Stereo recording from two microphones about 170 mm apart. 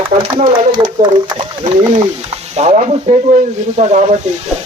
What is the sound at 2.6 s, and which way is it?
Speech, 40° right (ahead or behind).